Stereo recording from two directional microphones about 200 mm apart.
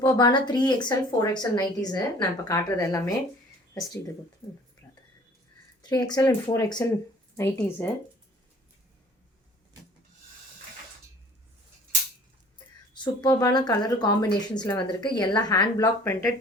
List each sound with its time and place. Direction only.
0.0 s a woman's voice: 20° left (ahead or behind)
4.8 s a sound: 15° left (ahead or behind)
5.8 s speech: 20° left (ahead or behind)
13.2 s a woman's voice: 20° left (ahead or behind)